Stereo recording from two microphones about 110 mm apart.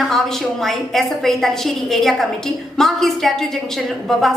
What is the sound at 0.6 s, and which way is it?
A woman's voice, 5° left (ahead or behind).